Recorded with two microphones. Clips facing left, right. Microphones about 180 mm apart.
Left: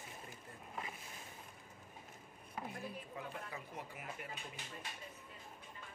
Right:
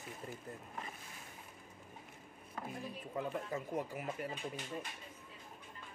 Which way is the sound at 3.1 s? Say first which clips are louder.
Right 8 dB; 45° right (ahead or behind).